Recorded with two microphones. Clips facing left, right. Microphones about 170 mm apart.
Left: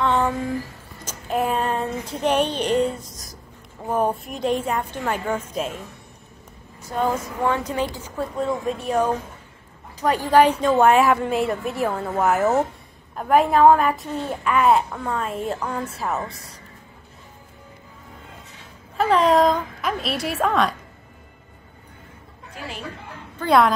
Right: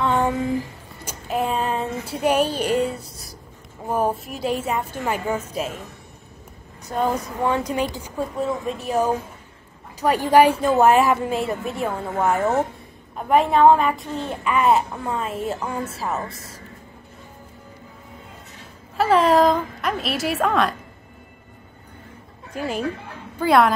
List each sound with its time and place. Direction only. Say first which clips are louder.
0.0 s a sound: right 1 dB; 10° right (ahead or behind)
3.0 s writing: even; 30° right (ahead or behind)
3.8 s a child's voice: even; 5° right (ahead or behind)
6.8 s speech: even; 20° right (ahead or behind)
8.4 s a child's voice: left 2 dB; centre (ahead or behind)
18.9 s a child's voice: right 1 dB; centre (ahead or behind)
23.4 s a child's voice: right 1 dB; centre (ahead or behind)